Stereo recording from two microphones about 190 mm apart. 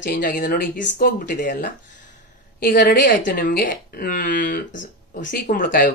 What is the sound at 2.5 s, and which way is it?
A woman's voice, 55° left (ahead or behind).